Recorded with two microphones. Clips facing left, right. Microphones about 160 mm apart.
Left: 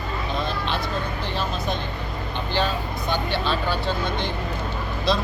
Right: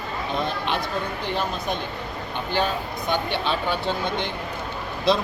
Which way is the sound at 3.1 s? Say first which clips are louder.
Even; 20° right (ahead or behind).